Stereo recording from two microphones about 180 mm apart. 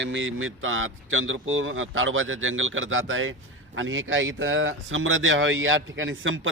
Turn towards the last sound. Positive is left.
turn(degrees=-90)